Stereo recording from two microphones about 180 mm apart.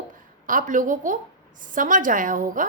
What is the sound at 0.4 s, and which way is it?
A woman's voice, 45° right (ahead or behind).